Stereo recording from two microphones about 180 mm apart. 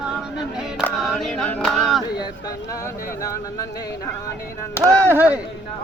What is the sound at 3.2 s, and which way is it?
Speech, 20° left (ahead or behind).